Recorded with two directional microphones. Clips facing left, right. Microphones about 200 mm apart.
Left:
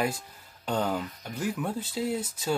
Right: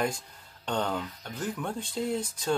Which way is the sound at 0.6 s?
5° left (ahead or behind).